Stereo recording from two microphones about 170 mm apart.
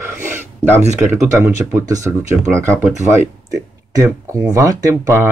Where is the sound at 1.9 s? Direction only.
20° right (ahead or behind).